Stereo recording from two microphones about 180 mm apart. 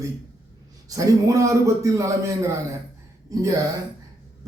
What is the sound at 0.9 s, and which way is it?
A man's voice, 20° right (ahead or behind).